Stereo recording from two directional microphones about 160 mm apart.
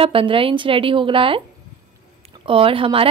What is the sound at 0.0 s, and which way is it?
A woman's voice, 35° right (ahead or behind).